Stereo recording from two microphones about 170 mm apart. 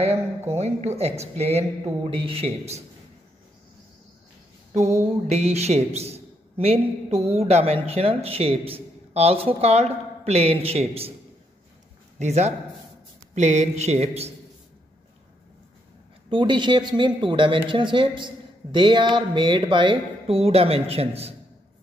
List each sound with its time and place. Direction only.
0.6 s a man's voice: 40° right (ahead or behind)
5.3 s a man's voice: 40° right (ahead or behind)
12.2 s a man's voice: 40° right (ahead or behind)
16.3 s speech: 30° right (ahead or behind)